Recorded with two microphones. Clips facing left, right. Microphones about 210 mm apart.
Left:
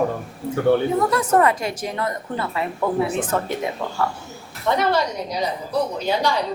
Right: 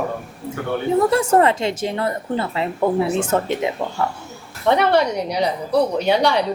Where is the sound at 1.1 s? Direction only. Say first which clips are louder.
Right 3 dB; 25° right (ahead or behind).